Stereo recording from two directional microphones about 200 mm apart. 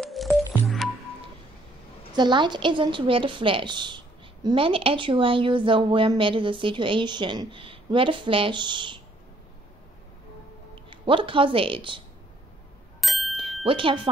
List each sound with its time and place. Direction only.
0.0 s music: centre (ahead or behind)
2.1 s a woman's voice: 20° right (ahead or behind)
10.9 s a woman's voice: 25° right (ahead or behind)
13.0 s ding: centre (ahead or behind)
13.7 s a woman's voice: 25° right (ahead or behind)